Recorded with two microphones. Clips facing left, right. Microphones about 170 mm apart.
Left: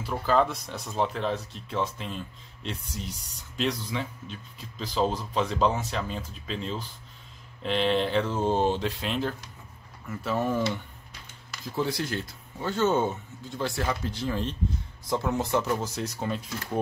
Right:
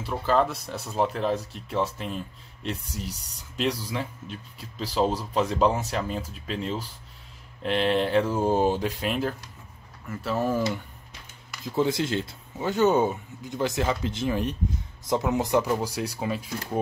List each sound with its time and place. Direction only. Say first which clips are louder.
0.0 s speech: right 1 dB; centre (ahead or behind)
11.7 s speech: right 5 dB; 20° right (ahead or behind)